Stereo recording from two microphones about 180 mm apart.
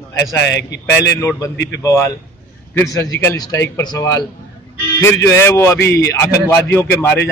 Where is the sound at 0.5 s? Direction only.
75° left (ahead or behind).